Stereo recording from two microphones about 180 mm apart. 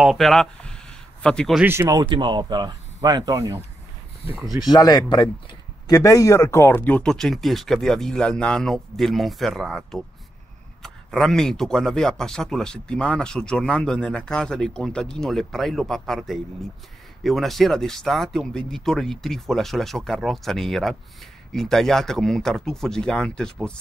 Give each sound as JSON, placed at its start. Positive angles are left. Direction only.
{"t": 0.0, "sound": "speech", "side_deg": 0}
{"t": 1.6, "sound": "speech", "side_deg": -15}
{"t": 4.6, "sound": "speech", "side_deg": 20}